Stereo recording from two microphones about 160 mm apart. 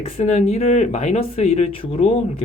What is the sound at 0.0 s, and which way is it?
Speech, 40° left (ahead or behind).